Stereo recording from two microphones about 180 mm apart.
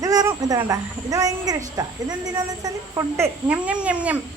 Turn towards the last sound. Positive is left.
turn(degrees=-5)  # may be behind; listen again after turning